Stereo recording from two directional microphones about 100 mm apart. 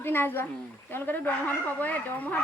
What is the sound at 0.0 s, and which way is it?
A woman's voice, 20° left (ahead or behind).